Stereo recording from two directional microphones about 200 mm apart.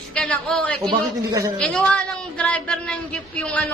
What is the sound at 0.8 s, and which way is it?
Speech, 20° right (ahead or behind).